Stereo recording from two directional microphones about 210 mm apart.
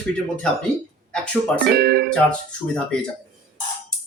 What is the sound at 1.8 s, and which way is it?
Speech, 50° right (ahead or behind).